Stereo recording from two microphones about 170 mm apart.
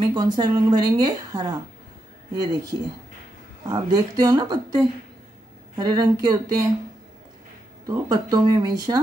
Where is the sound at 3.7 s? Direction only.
25° right (ahead or behind).